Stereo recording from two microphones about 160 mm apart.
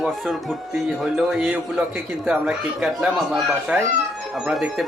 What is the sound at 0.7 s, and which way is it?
A man's voice, 5° right (ahead or behind).